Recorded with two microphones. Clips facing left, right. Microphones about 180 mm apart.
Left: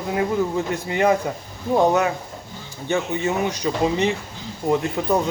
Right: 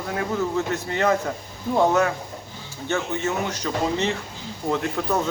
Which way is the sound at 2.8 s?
15° left (ahead or behind).